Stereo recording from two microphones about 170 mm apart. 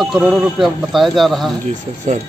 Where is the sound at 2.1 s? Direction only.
45° right (ahead or behind).